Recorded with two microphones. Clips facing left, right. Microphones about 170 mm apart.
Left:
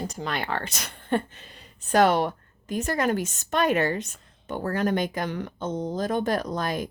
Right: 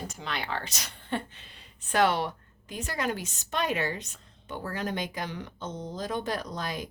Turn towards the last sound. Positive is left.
turn(degrees=50)  # may be behind; listen again after turning